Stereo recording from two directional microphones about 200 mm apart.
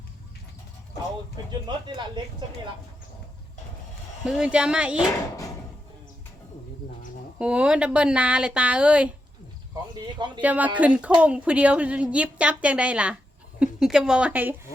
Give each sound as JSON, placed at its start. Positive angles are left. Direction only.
{"t": 1.7, "sound": "speech", "side_deg": -20}
{"t": 4.2, "sound": "speech", "side_deg": -5}
{"t": 7.3, "sound": "speech", "side_deg": -5}
{"t": 10.4, "sound": "a woman's voice", "side_deg": -5}